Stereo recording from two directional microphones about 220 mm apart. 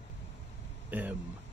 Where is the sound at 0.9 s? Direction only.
10° right (ahead or behind).